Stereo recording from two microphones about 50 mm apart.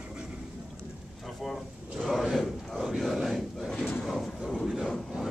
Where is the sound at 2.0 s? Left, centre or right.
Centre.